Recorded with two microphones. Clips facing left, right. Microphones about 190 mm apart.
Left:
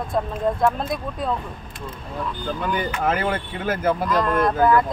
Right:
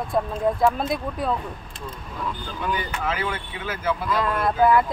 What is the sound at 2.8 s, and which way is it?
Speech, 50° left (ahead or behind).